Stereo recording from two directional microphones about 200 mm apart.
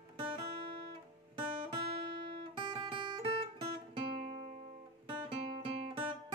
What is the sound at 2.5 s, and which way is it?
Guitar, 25° right (ahead or behind).